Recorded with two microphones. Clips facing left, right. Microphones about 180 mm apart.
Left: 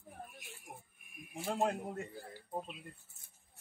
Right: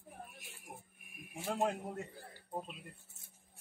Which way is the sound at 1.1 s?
Centre (ahead or behind).